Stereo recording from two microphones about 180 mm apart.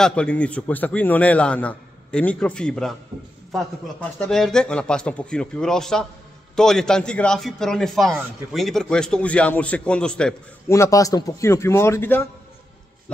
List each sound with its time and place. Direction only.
0.0 s a man's voice: 5° left (ahead or behind)
4.2 s a man's voice: 5° left (ahead or behind)
10.7 s a man's voice: 15° left (ahead or behind)